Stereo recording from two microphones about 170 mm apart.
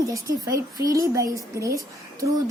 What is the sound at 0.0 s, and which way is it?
Speech, 20° right (ahead or behind).